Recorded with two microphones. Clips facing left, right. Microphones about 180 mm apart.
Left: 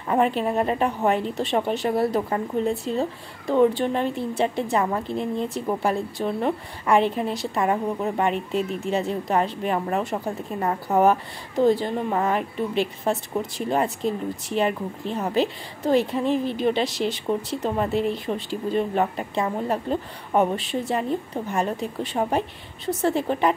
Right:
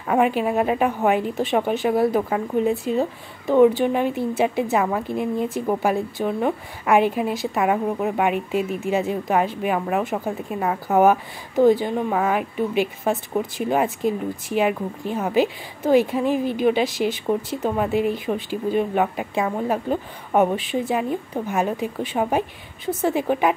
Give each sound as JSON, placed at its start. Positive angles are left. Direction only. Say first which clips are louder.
{"t": 0.1, "sound": "a woman's voice", "louder": "right 2 dB", "side_deg": -5}